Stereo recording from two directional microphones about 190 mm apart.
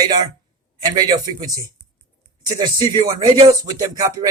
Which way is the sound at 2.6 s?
25° right (ahead or behind).